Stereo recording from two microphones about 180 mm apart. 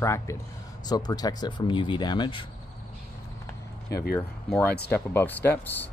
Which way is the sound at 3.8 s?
60° left (ahead or behind).